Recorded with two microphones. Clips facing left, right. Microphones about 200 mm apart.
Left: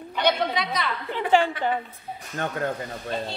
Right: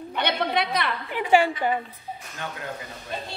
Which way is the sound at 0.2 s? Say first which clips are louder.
Left 1 dB; 60° right (ahead or behind).